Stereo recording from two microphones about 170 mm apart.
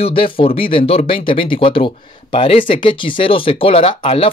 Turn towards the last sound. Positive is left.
turn(degrees=30)  # may be behind; listen again after turning